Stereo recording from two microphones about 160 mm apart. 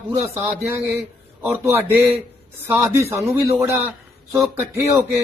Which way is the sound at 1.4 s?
10° right (ahead or behind).